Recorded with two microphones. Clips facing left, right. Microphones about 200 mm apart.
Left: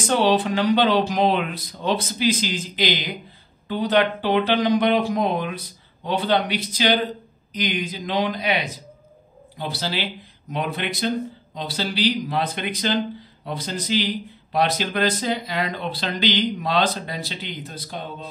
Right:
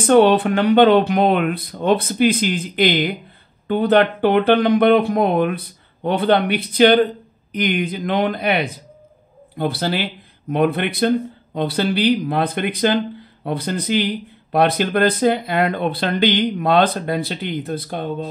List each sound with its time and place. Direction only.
0.0 s speech: 55° right (ahead or behind)